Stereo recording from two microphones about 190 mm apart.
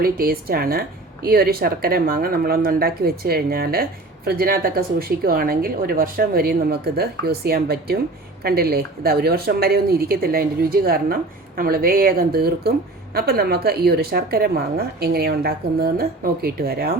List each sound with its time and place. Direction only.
0.0 s speech: 50° right (ahead or behind)